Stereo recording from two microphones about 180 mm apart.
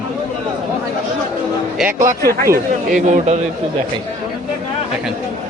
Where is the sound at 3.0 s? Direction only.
40° right (ahead or behind).